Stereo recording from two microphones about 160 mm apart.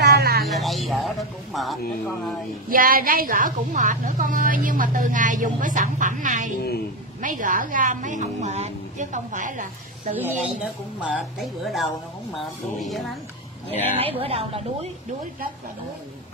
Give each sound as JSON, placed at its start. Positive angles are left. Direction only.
{"t": 0.0, "sound": "a sound", "side_deg": -80}
{"t": 0.5, "sound": "music", "side_deg": 0}
{"t": 2.7, "sound": "a woman's voice", "side_deg": -60}
{"t": 10.1, "sound": "a woman's voice", "side_deg": -10}
{"t": 14.0, "sound": "a woman's voice", "side_deg": -35}